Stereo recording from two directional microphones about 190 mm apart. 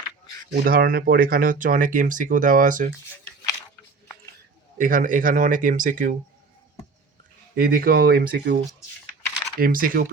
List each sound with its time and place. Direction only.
0.5 s speech: 50° right (ahead or behind)
4.8 s speech: 45° right (ahead or behind)
7.5 s speech: 50° right (ahead or behind)
9.6 s speech: 50° right (ahead or behind)